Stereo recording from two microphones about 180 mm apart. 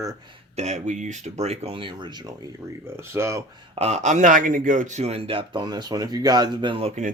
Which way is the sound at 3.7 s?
35° right (ahead or behind).